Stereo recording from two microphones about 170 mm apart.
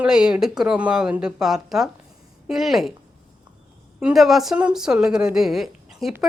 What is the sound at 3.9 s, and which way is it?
A woman's voice, centre (ahead or behind).